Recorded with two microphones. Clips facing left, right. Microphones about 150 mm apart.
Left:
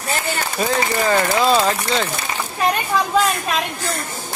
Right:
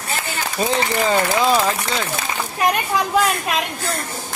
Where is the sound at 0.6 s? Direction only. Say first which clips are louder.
Right 1 dB; 20° right (ahead or behind).